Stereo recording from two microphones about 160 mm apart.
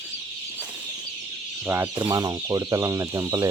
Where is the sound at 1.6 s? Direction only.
15° right (ahead or behind).